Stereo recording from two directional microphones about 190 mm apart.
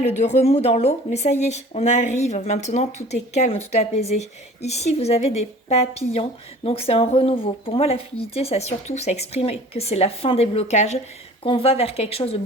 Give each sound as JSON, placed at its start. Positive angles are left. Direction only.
{"t": 0.0, "sound": "speech", "side_deg": 35}